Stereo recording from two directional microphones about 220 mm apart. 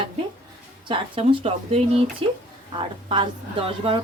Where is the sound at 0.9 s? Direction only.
25° right (ahead or behind).